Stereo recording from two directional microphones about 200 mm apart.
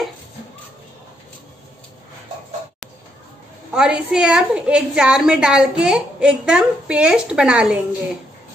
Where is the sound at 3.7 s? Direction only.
5° right (ahead or behind).